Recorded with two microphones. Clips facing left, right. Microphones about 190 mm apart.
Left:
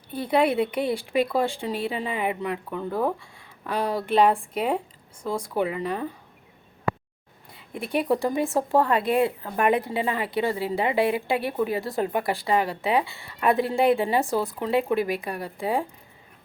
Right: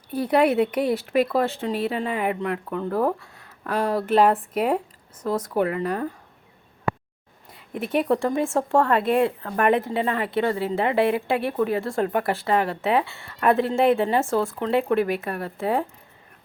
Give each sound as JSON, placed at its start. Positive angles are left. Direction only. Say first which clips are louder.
{"t": 0.1, "sound": "a woman's voice", "louder": "right 3 dB", "side_deg": -5}
{"t": 7.5, "sound": "a woman's voice", "louder": "right 3 dB", "side_deg": 0}